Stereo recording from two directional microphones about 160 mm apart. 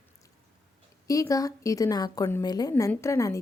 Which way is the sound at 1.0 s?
20° left (ahead or behind).